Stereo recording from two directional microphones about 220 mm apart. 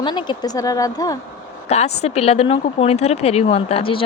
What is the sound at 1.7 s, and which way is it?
Speech, 30° left (ahead or behind).